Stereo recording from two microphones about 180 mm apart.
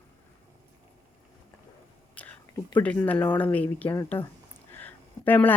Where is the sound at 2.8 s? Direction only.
10° left (ahead or behind).